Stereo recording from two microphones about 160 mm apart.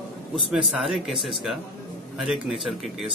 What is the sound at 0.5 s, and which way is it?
Speech, centre (ahead or behind).